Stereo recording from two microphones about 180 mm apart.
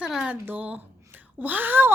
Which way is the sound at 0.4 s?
10° right (ahead or behind).